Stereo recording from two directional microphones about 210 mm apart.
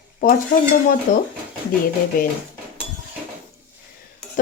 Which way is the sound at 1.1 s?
40° left (ahead or behind).